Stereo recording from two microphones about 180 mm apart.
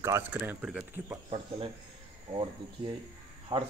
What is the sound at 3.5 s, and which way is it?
Speech, 20° right (ahead or behind).